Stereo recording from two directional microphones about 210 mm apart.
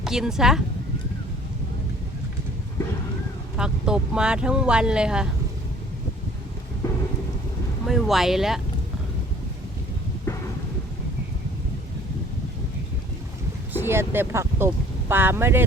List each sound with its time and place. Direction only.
0.0 s speech: centre (ahead or behind)
3.6 s speech: 5° right (ahead or behind)
6.8 s thunder: 15° left (ahead or behind)
7.9 s speech: centre (ahead or behind)
10.3 s thunder: 10° left (ahead or behind)
13.7 s speech: 10° right (ahead or behind)